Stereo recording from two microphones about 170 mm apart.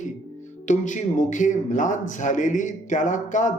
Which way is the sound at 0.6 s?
45° left (ahead or behind).